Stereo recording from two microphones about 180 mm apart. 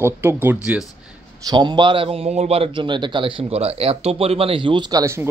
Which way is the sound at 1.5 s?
25° right (ahead or behind).